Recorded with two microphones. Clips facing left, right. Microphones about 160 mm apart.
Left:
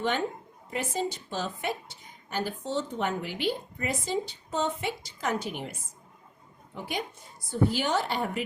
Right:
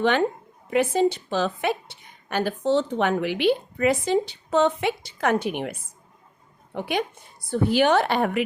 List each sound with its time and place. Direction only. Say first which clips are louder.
0.0 s a woman's voice: right 8 dB; 75° right (ahead or behind)
6.7 s a woman's voice: right 8 dB; 70° right (ahead or behind)